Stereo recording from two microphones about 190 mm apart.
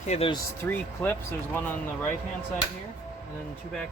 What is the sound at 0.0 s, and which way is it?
Speech, 35° left (ahead or behind).